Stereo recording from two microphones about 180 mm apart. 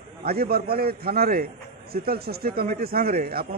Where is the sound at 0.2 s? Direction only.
60° right (ahead or behind).